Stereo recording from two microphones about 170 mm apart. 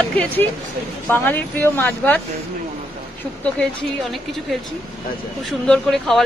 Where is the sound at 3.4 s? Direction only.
5° left (ahead or behind).